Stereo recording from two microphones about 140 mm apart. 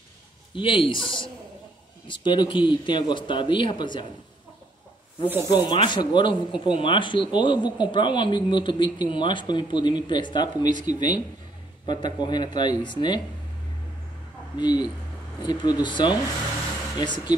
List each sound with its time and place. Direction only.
0.6 s a man's voice: 40° left (ahead or behind)
5.5 s a man's voice: 30° left (ahead or behind)
14.6 s a man's voice: 30° left (ahead or behind)